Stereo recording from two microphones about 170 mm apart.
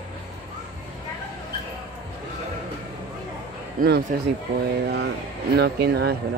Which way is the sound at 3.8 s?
55° right (ahead or behind).